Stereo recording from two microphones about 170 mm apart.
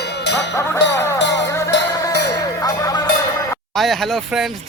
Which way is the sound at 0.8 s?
90° left.